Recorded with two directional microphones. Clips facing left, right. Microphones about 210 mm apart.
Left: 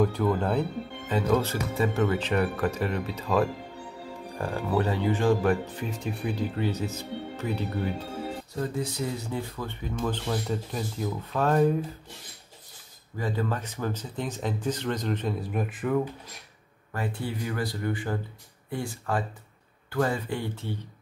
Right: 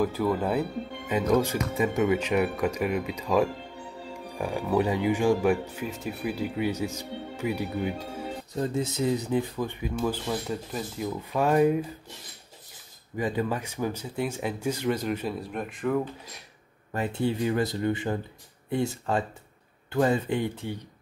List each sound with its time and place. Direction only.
0.0 s speech: 5° right (ahead or behind)
8.5 s speech: 25° right (ahead or behind); by 11.1 s centre (ahead or behind)
11.1 s speech: 10° right (ahead or behind)
13.2 s speech: 15° right (ahead or behind); by 16.0 s 5° left (ahead or behind)
16.9 s speech: 20° right (ahead or behind)